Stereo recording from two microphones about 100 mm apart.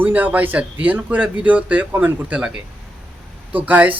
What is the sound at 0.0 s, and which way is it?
Speech, 15° right (ahead or behind).